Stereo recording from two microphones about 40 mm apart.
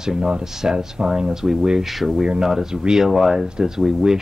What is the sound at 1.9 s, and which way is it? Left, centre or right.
Speech, centre.